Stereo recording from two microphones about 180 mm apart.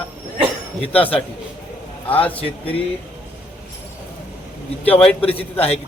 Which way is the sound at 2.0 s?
10° left (ahead or behind).